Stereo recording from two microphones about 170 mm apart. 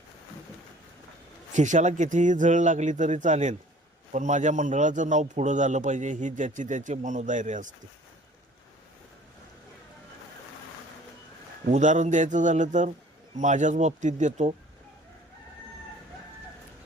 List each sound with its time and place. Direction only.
1.5 s a man's voice: 45° right (ahead or behind)
11.7 s a man's voice: 45° right (ahead or behind)